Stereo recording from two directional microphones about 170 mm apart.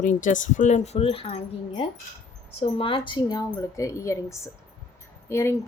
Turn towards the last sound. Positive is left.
turn(degrees=15)  # may be behind; listen again after turning